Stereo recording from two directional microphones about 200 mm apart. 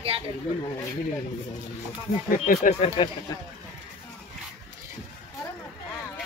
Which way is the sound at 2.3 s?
45° left (ahead or behind).